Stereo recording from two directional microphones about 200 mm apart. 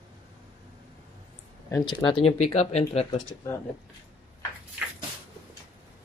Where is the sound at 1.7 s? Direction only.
25° left (ahead or behind).